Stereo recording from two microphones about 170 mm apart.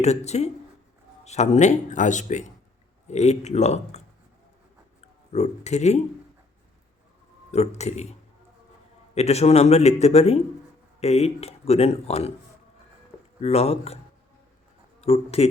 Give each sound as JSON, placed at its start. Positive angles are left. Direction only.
{"t": 0.0, "sound": "speech", "side_deg": 40}
{"t": 7.5, "sound": "speech", "side_deg": 40}
{"t": 9.1, "sound": "speech", "side_deg": 40}
{"t": 13.4, "sound": "speech", "side_deg": 35}
{"t": 15.0, "sound": "speech", "side_deg": 35}